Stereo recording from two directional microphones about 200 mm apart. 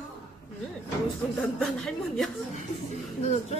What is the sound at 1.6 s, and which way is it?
Speech, centre (ahead or behind).